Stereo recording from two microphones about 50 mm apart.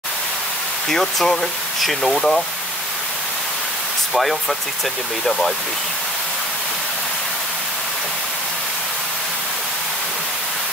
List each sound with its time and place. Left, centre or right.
0.8 s speech: centre
4.1 s speech: centre